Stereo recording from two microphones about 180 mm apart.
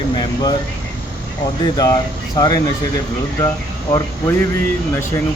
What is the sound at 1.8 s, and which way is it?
Speech, 20° left (ahead or behind).